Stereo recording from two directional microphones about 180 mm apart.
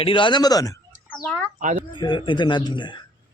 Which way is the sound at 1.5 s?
45° right (ahead or behind).